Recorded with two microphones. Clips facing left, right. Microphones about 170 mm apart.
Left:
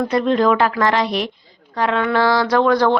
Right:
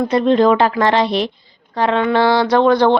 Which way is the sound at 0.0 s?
25° right (ahead or behind).